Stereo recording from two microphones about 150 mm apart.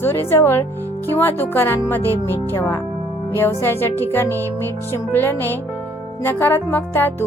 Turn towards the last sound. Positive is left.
turn(degrees=15)  # may be behind; listen again after turning